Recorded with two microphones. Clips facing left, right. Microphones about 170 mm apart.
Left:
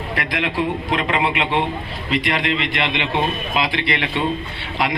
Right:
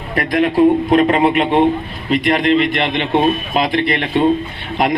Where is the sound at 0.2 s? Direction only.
40° right (ahead or behind).